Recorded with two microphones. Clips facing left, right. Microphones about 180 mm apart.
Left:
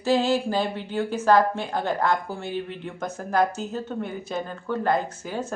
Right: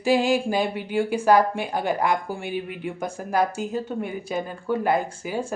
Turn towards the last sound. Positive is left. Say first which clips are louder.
# right 2 dB
turn(degrees=-10)  # may be behind; listen again after turning